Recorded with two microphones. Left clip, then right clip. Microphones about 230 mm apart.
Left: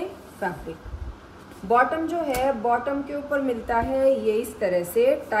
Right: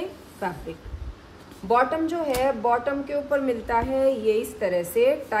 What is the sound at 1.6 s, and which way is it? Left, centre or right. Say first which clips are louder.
Speech: left 1 dB; right.